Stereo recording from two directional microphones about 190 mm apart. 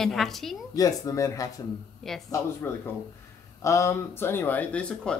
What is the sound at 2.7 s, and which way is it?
Speech, 15° left (ahead or behind).